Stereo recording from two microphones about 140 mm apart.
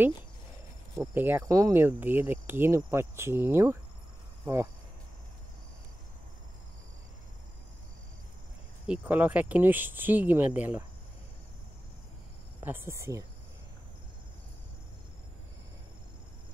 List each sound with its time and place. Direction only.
1.1 s speech: 15° right (ahead or behind)
8.8 s speech: 10° right (ahead or behind)
12.5 s speech: 15° right (ahead or behind)